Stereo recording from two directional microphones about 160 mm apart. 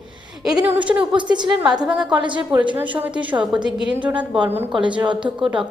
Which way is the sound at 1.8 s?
5° right (ahead or behind).